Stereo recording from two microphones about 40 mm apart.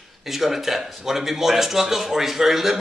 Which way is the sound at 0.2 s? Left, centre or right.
Centre.